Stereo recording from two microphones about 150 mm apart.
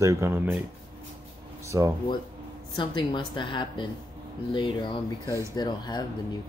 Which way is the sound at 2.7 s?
30° left (ahead or behind).